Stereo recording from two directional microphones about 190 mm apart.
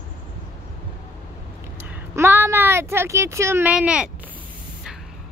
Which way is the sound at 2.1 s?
10° right (ahead or behind).